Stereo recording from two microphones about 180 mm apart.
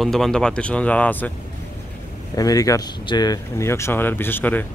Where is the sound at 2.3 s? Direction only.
20° left (ahead or behind).